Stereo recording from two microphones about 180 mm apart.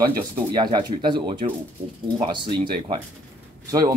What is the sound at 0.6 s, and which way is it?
Speech, 25° right (ahead or behind).